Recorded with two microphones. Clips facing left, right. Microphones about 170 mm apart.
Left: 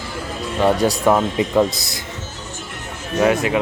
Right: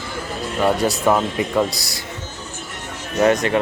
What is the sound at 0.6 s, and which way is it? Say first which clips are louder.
A man's voice: left 2 dB; 15° left (ahead or behind).